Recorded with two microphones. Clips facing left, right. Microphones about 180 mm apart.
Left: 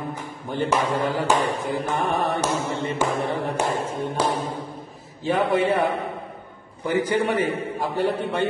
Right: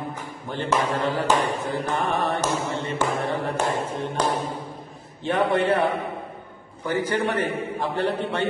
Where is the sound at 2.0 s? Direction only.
15° left (ahead or behind).